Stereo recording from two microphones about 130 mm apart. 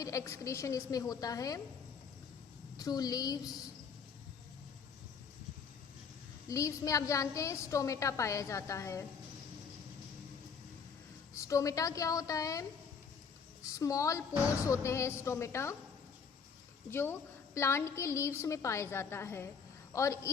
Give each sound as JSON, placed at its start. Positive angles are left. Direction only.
{"t": 0.0, "sound": "a woman's voice", "side_deg": 25}
{"t": 2.7, "sound": "a woman's voice", "side_deg": 30}
{"t": 6.5, "sound": "a woman's voice", "side_deg": 25}
{"t": 11.3, "sound": "a woman's voice", "side_deg": 25}
{"t": 13.7, "sound": "a woman's voice", "side_deg": 25}
{"t": 16.9, "sound": "a woman's voice", "side_deg": 20}